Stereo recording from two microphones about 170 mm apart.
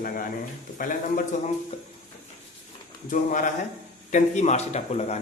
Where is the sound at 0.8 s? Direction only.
50° left (ahead or behind).